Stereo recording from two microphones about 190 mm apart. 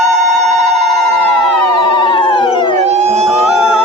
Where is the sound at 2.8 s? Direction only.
35° right (ahead or behind).